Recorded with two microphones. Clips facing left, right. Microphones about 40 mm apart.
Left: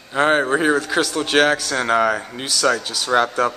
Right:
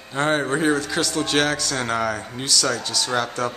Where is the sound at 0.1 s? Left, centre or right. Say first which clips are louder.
Left 5 dB; centre.